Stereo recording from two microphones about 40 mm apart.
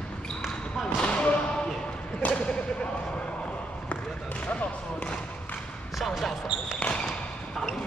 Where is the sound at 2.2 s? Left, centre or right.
Left.